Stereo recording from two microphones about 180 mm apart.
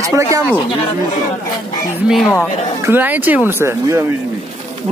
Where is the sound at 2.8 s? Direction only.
10° right (ahead or behind).